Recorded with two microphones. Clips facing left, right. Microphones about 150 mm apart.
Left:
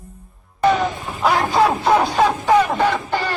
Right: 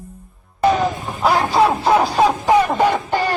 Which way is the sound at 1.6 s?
Centre (ahead or behind).